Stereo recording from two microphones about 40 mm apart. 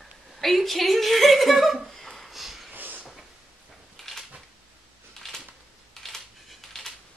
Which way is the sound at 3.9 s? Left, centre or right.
Centre.